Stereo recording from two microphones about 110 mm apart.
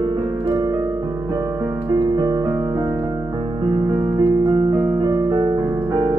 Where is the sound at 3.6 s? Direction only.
40° right (ahead or behind).